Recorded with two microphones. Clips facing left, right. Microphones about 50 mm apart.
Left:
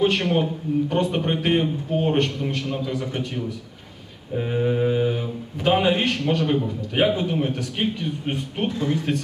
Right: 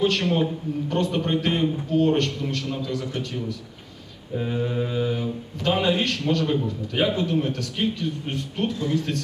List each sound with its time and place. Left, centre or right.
0.0 s speech: centre